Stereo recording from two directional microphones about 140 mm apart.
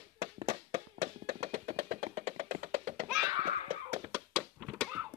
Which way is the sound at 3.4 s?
45° right (ahead or behind).